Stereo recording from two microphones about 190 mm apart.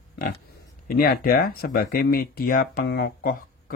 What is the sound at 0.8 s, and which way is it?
Speech, 50° left (ahead or behind).